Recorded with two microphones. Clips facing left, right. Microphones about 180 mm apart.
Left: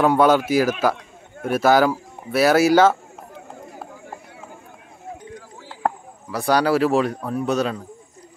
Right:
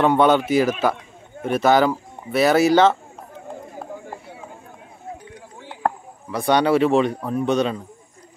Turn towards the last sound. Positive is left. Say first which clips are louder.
# right 2 dB
turn(degrees=0)  # may be behind; listen again after turning